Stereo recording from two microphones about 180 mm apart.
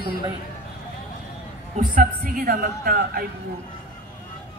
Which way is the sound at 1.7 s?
50° right (ahead or behind).